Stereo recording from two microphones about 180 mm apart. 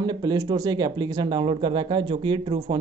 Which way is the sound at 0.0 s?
25° right (ahead or behind).